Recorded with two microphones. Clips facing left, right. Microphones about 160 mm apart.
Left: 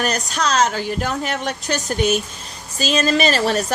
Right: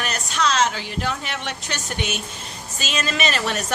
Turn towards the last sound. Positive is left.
turn(degrees=35)  # may be behind; listen again after turning